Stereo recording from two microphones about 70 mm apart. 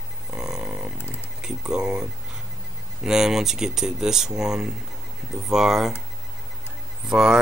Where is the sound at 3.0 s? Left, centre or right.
Centre.